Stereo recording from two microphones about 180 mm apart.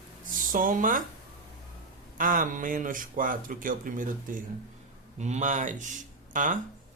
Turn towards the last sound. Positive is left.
turn(degrees=-45)  # may be behind; listen again after turning